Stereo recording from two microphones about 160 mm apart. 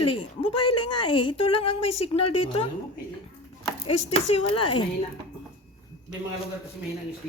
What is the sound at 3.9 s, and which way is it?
Speech, 40° left (ahead or behind).